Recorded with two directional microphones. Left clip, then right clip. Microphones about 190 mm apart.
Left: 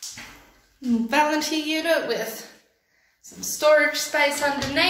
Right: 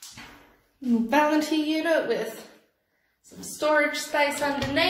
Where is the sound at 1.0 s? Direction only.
20° right (ahead or behind).